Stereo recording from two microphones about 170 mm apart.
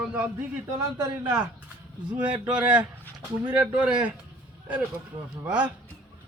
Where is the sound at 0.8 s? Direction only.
20° right (ahead or behind).